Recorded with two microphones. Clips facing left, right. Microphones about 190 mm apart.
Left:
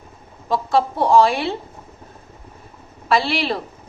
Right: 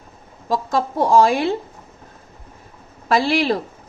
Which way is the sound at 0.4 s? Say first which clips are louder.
Left 2 dB; 40° right (ahead or behind).